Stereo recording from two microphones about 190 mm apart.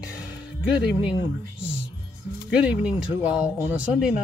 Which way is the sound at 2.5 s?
5° right (ahead or behind).